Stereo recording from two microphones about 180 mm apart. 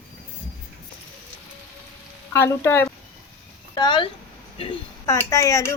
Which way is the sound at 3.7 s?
25° left (ahead or behind).